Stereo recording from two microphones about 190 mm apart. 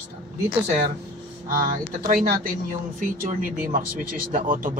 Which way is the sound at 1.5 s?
45° right (ahead or behind).